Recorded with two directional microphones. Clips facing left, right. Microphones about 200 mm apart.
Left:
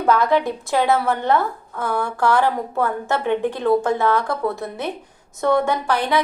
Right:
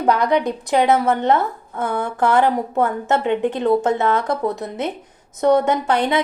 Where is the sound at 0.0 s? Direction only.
15° right (ahead or behind).